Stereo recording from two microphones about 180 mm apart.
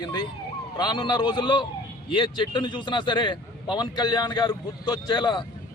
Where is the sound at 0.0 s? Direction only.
20° left (ahead or behind).